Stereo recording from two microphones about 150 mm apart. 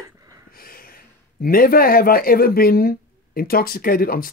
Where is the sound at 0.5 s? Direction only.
75° left (ahead or behind).